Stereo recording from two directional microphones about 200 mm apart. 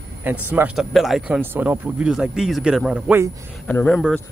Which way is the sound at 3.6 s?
5° left (ahead or behind).